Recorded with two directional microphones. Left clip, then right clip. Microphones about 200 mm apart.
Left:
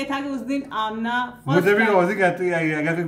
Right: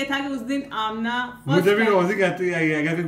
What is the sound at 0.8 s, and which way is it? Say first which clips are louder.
Speech: left 1 dB; 20° right (ahead or behind).